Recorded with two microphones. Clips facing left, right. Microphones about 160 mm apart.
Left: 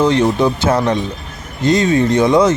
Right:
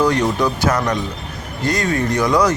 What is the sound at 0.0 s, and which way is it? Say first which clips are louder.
Speech: left 4 dB; 25° left (ahead or behind).